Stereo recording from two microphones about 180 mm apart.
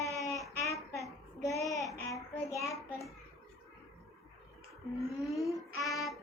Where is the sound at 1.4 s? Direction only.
20° left (ahead or behind).